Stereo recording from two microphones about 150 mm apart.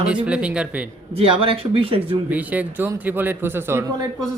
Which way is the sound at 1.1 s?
40° right (ahead or behind).